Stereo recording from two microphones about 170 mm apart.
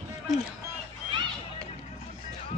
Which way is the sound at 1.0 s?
30° right (ahead or behind).